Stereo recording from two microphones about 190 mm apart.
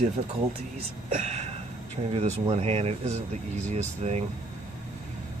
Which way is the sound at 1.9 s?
35° right (ahead or behind).